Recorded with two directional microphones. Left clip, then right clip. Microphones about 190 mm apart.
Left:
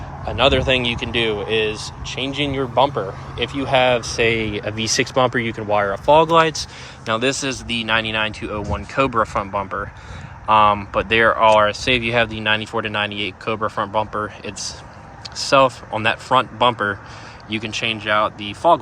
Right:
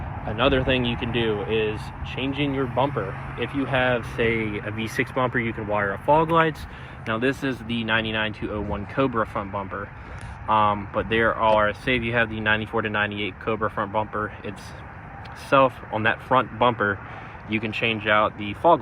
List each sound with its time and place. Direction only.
0.3 s speech: 15° left (ahead or behind)